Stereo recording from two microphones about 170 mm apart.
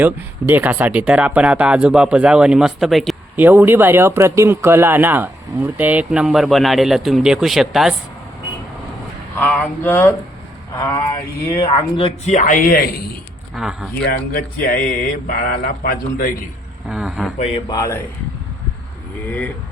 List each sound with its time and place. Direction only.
0.0 s speech: 10° right (ahead or behind)
3.3 s speech: 10° right (ahead or behind)
9.3 s speech: 10° left (ahead or behind)
11.7 s speech: 35° left (ahead or behind); by 12.9 s 60° left (ahead or behind)
13.6 s speech: centre (ahead or behind)
14.0 s speech: 65° left (ahead or behind)
16.9 s speech: centre (ahead or behind)
17.3 s speech: 40° left (ahead or behind)
17.7 s speech: 20° left (ahead or behind)